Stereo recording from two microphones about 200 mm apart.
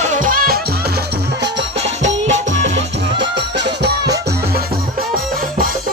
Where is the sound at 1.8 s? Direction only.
35° right (ahead or behind).